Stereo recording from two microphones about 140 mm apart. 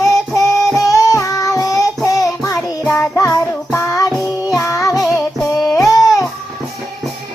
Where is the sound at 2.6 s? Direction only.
15° left (ahead or behind).